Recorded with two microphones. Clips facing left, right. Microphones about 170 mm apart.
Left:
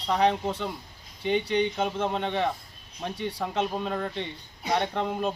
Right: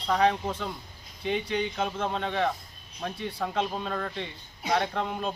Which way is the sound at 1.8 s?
15° left (ahead or behind).